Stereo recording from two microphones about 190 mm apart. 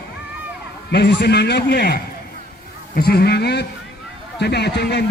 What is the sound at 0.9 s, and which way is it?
A man's voice, 65° left (ahead or behind).